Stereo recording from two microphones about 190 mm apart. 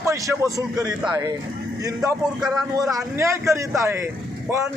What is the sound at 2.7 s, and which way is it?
Speech, 15° right (ahead or behind).